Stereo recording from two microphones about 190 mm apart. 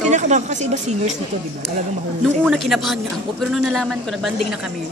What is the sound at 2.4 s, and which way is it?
A man's voice, centre (ahead or behind).